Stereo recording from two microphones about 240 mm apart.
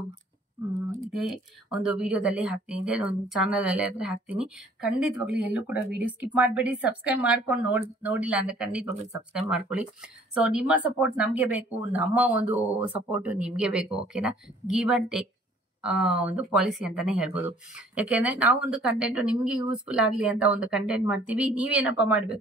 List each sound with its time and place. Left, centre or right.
1.1 s speech: centre